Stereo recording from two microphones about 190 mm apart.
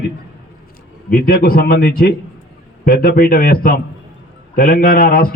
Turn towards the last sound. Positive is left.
turn(degrees=50)  # may be behind; listen again after turning